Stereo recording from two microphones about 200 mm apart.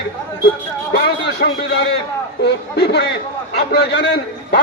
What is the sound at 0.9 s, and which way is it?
A man's voice, 55° left (ahead or behind).